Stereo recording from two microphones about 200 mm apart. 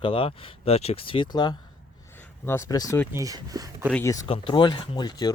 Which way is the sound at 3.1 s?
15° right (ahead or behind).